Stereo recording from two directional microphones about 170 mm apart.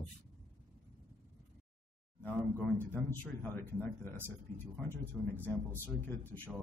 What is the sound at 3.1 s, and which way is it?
Speech, 10° left (ahead or behind).